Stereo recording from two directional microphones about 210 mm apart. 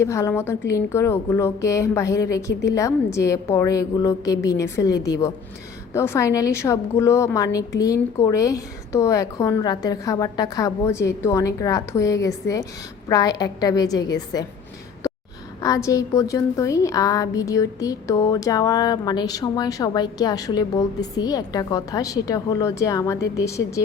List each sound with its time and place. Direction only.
0.0 s a woman's voice: 15° left (ahead or behind)
15.6 s a woman's voice: 15° left (ahead or behind)